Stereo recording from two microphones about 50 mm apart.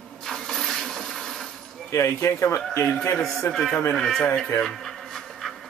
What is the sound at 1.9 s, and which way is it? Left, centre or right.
Speech, left.